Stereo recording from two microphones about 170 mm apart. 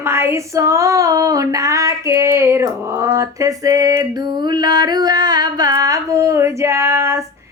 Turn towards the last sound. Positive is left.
turn(degrees=-15)  # may be behind; listen again after turning